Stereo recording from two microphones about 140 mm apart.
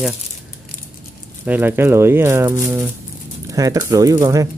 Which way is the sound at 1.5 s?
15° right (ahead or behind).